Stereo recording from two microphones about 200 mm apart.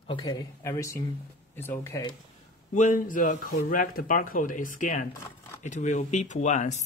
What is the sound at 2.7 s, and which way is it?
Speech, 40° left (ahead or behind).